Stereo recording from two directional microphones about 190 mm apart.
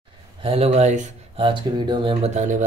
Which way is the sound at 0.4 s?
30° right (ahead or behind).